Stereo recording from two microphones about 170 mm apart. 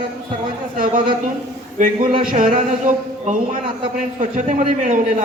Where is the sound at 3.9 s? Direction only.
45° right (ahead or behind).